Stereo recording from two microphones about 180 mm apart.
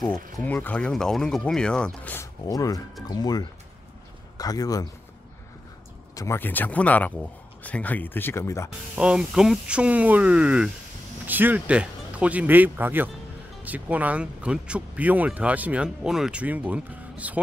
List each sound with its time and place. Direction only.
0.0 s speech: 10° left (ahead or behind)
6.1 s speech: 15° left (ahead or behind)
8.9 s speech: 5° right (ahead or behind)